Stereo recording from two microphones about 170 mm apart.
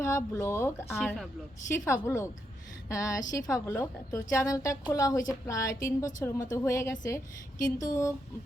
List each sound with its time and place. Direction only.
0.0 s a woman's voice: 15° left (ahead or behind)